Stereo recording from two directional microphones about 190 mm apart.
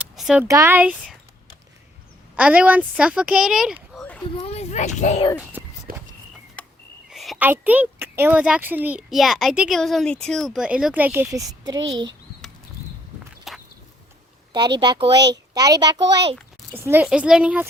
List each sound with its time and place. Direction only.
0.0 s a sound: 5° right (ahead or behind)
0.4 s a woman's voice: 15° right (ahead or behind)
2.3 s a woman's voice: 5° right (ahead or behind)
3.9 s children playing: 5° left (ahead or behind)
4.4 s a child's voice: 35° left (ahead or behind)
5.4 s speech: 10° right (ahead or behind)
5.9 s walk: 45° right (ahead or behind)
6.6 s a sound: 10° left (ahead or behind)
7.1 s a woman's voice: centre (ahead or behind); by 12.1 s 20° right (ahead or behind)
13.5 s a sound: centre (ahead or behind)
14.8 s a child's voice: 25° right (ahead or behind)
16.7 s a woman's voice: 10° right (ahead or behind)